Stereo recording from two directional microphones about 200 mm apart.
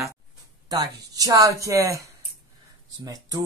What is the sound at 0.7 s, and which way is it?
Speech, 20° right (ahead or behind).